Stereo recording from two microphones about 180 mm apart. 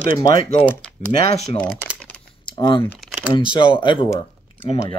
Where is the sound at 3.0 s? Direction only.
5° right (ahead or behind).